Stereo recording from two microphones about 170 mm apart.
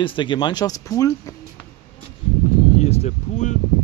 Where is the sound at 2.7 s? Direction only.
40° left (ahead or behind).